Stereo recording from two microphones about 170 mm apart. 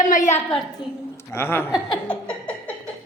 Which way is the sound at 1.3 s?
15° left (ahead or behind).